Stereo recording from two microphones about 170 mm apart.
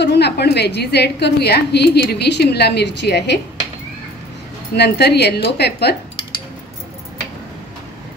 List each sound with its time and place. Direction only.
0.0 s a woman's voice: 80° left
4.7 s a woman's voice: 75° left (ahead or behind)
5.6 s cutlery: 75° left (ahead or behind)